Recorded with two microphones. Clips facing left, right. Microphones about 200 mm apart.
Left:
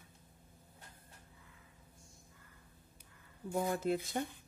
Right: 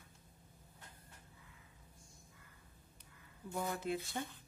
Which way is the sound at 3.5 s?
40° left (ahead or behind).